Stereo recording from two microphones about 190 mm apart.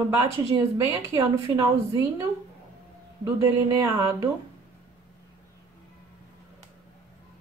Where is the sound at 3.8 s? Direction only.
15° right (ahead or behind).